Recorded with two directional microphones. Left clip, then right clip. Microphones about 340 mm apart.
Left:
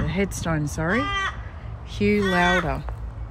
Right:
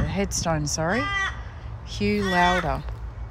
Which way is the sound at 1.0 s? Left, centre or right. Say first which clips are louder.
Even; centre.